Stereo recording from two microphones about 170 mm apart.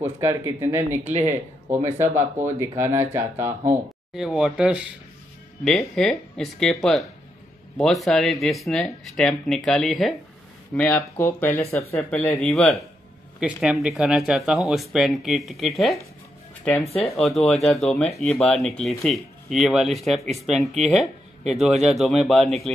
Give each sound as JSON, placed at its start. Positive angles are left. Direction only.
{"t": 0.0, "sound": "speech", "side_deg": -15}
{"t": 4.1, "sound": "speech", "side_deg": 0}